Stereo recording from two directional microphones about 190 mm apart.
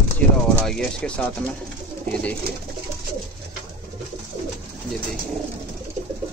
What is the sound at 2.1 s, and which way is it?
Pigeon, 5° left (ahead or behind).